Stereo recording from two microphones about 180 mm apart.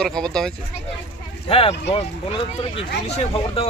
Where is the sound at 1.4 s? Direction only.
30° left (ahead or behind).